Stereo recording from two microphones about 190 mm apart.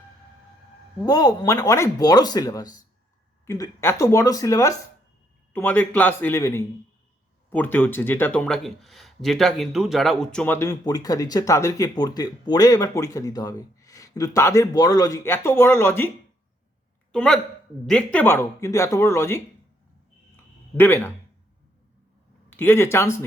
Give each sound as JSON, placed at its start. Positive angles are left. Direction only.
{"t": 1.0, "sound": "speech", "side_deg": 20}
{"t": 20.7, "sound": "speech", "side_deg": 10}
{"t": 22.4, "sound": "speech", "side_deg": 10}